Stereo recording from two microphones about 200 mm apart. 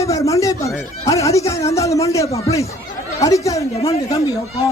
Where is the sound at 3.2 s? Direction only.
15° left (ahead or behind).